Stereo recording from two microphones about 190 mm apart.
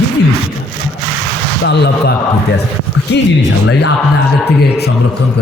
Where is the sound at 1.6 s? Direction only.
60° left (ahead or behind).